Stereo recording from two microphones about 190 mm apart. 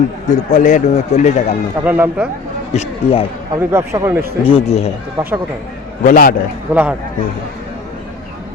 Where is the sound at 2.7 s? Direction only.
35° left (ahead or behind).